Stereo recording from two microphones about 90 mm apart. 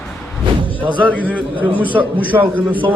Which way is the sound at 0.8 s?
15° right (ahead or behind).